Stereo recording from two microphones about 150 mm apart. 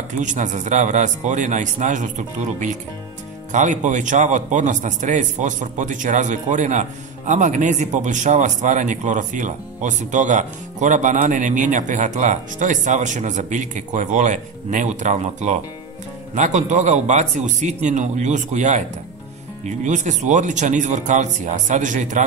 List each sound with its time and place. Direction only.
0.2 s a man's voice: 55° right (ahead or behind)